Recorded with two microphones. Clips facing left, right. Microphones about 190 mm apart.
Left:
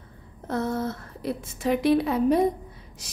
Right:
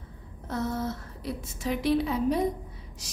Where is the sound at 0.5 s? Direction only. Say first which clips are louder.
Left 3 dB; 55° left (ahead or behind).